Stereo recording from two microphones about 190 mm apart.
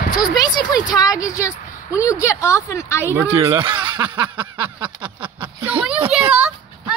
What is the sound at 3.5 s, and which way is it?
Speech, 25° right (ahead or behind).